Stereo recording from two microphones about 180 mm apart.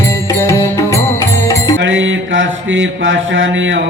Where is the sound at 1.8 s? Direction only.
90° right.